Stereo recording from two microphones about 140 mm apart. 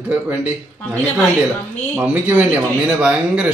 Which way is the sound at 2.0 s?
10° right (ahead or behind).